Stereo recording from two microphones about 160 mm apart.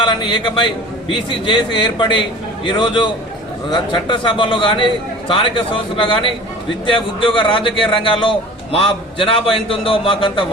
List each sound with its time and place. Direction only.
0.0 s a man's voice: 30° left (ahead or behind)